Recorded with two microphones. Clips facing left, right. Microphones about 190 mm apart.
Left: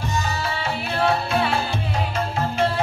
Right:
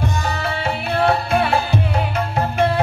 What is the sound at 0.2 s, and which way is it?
Music, 60° right (ahead or behind).